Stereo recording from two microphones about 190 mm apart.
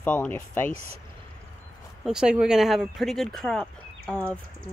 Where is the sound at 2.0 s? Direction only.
5° right (ahead or behind).